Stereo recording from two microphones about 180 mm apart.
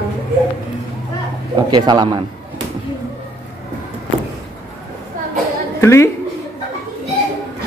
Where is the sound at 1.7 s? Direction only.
25° right (ahead or behind).